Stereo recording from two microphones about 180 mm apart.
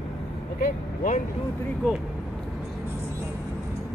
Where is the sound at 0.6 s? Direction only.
45° left (ahead or behind).